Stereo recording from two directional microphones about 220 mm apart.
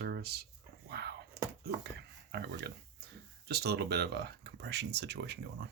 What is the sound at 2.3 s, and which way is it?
Speech, 50° right (ahead or behind).